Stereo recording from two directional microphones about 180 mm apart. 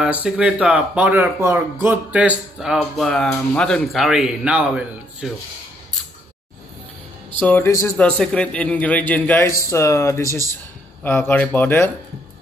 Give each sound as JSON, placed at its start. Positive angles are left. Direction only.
{"t": 0.0, "sound": "speech", "side_deg": -5}
{"t": 7.3, "sound": "a man's voice", "side_deg": 10}
{"t": 8.0, "sound": "a man's voice", "side_deg": 5}